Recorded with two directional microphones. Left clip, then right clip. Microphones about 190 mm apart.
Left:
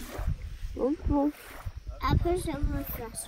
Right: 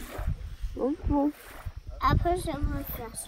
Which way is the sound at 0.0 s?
25° left (ahead or behind).